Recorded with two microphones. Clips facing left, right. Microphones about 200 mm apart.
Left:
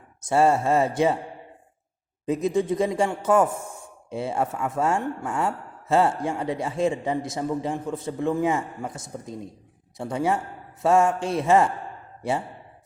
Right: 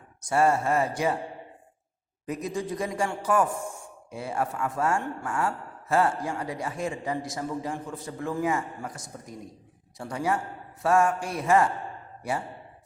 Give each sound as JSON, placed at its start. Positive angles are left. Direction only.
{"t": 0.2, "sound": "speech", "side_deg": 25}
{"t": 2.2, "sound": "speech", "side_deg": 25}